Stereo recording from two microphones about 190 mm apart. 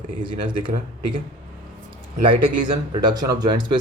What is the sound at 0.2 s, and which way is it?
Speech, 25° right (ahead or behind).